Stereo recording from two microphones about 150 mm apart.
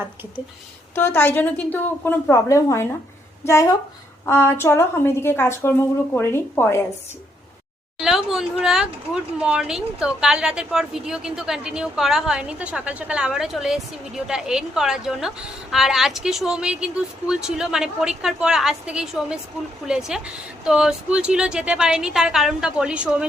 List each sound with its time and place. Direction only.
0.9 s a woman's voice: 15° left (ahead or behind)
8.0 s a woman's voice: centre (ahead or behind)